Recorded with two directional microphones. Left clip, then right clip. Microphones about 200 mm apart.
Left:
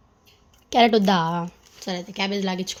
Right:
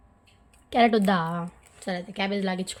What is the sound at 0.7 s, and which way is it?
A woman's voice, 15° left (ahead or behind).